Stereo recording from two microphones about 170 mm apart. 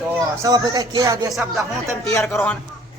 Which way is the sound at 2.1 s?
15° left (ahead or behind).